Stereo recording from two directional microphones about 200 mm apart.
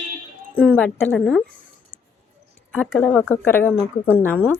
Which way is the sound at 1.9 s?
35° right (ahead or behind).